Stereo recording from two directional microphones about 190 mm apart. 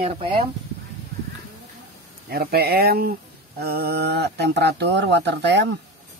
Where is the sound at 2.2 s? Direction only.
55° right (ahead or behind).